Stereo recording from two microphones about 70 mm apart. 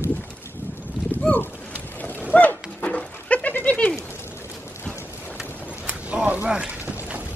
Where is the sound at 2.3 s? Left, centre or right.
Left.